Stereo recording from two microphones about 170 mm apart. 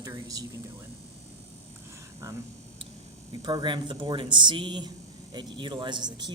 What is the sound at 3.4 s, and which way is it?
Speech, 25° right (ahead or behind).